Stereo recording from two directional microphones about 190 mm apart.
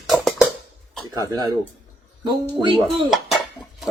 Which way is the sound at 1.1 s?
20° right (ahead or behind).